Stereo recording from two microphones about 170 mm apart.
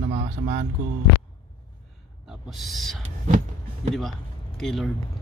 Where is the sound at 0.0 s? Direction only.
40° right (ahead or behind).